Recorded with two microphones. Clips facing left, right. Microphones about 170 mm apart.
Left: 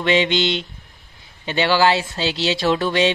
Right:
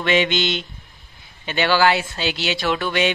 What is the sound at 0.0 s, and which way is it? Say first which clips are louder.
Mantra: left 1 dB; 25° left (ahead or behind).